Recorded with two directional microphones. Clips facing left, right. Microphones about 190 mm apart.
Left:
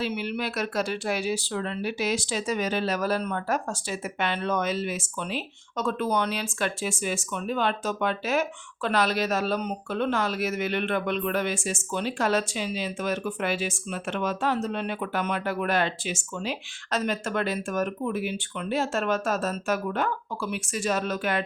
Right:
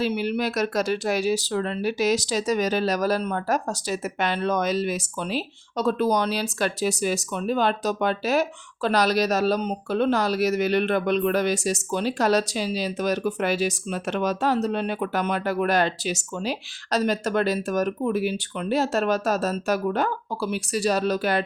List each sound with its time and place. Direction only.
0.0 s speech: 40° right (ahead or behind)